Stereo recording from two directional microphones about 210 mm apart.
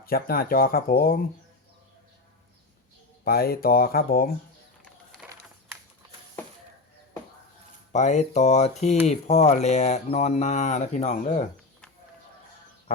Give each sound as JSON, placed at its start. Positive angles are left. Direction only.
{"t": 0.0, "sound": "speech", "side_deg": 45}
{"t": 3.2, "sound": "speech", "side_deg": 45}
{"t": 7.9, "sound": "speech", "side_deg": 35}